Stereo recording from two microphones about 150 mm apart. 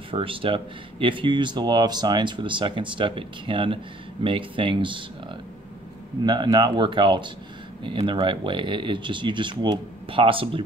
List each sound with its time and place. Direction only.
0.1 s speech: 35° right (ahead or behind)
6.2 s speech: 30° right (ahead or behind)